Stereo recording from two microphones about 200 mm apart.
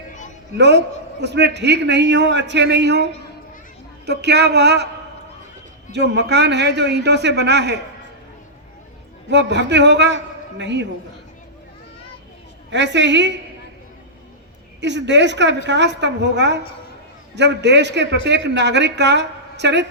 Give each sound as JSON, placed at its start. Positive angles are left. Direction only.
{"t": 0.5, "sound": "a man's voice", "side_deg": -60}
{"t": 5.9, "sound": "a man's voice", "side_deg": -55}
{"t": 9.3, "sound": "a man's voice", "side_deg": -60}
{"t": 12.7, "sound": "a man's voice", "side_deg": -60}
{"t": 14.8, "sound": "a man's voice", "side_deg": -60}